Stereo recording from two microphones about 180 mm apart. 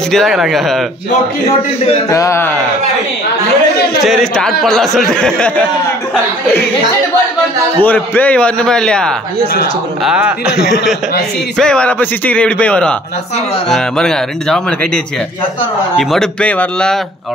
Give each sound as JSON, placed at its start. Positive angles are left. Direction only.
{"t": 0.1, "sound": "speech", "side_deg": 0}
{"t": 2.0, "sound": "speech", "side_deg": 20}
{"t": 4.0, "sound": "speech", "side_deg": 0}
{"t": 7.8, "sound": "speech", "side_deg": 10}
{"t": 11.5, "sound": "speech", "side_deg": 5}
{"t": 16.0, "sound": "speech", "side_deg": 0}